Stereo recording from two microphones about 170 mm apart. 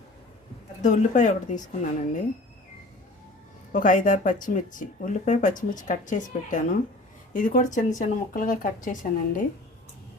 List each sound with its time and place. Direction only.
0.8 s speech: 45° left (ahead or behind)
3.7 s speech: 50° left (ahead or behind)